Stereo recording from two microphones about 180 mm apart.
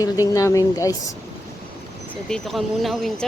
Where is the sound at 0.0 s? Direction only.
20° left (ahead or behind).